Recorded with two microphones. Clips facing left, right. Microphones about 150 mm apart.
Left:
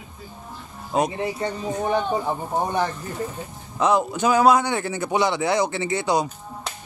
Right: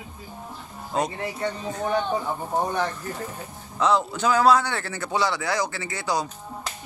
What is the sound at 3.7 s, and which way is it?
A man's voice, 20° left (ahead or behind).